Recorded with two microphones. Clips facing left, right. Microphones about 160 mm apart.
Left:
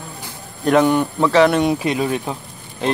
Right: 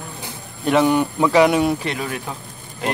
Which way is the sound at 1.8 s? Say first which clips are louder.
Left 6 dB; 25° left (ahead or behind).